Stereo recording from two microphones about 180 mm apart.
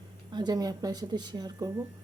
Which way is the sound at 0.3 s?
25° right (ahead or behind).